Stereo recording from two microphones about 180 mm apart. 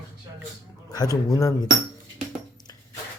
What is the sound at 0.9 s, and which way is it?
Speech, 20° left (ahead or behind).